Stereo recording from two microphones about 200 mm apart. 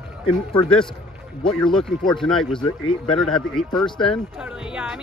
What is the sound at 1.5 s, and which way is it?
Speech, 5° left (ahead or behind).